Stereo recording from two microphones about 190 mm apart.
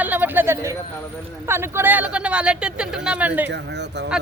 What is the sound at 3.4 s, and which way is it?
Speech, 65° right (ahead or behind).